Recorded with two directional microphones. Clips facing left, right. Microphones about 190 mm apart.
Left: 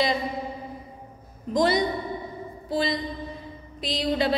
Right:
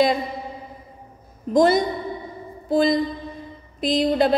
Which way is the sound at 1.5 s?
50° right (ahead or behind).